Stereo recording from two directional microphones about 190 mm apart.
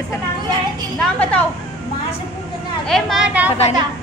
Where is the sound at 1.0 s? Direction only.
5° left (ahead or behind).